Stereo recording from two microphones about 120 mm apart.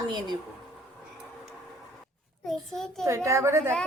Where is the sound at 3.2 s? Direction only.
20° right (ahead or behind).